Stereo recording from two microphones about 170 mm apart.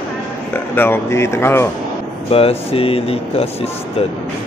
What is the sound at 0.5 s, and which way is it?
Speech, 10° left (ahead or behind).